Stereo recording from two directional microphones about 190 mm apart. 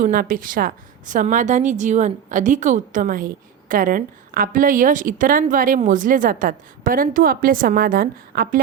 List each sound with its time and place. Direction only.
0.0 s a woman's voice: 45° right (ahead or behind)